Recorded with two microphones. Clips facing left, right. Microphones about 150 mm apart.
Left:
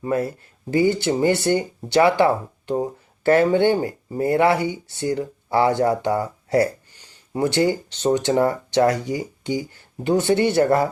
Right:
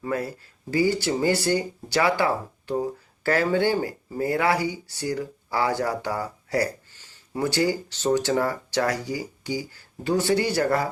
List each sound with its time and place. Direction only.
0.0 s speech: 25° left (ahead or behind)